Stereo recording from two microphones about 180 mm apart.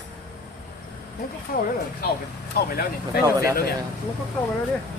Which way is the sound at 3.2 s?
15° right (ahead or behind).